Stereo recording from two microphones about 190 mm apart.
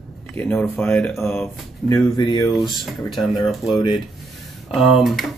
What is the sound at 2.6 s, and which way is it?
Speech, centre (ahead or behind).